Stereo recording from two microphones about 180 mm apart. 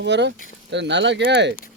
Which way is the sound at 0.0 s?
75° right (ahead or behind).